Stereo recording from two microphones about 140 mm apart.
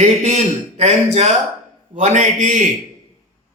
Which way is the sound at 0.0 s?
55° right (ahead or behind).